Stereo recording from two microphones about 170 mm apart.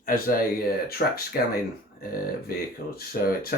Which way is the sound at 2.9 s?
60° left (ahead or behind).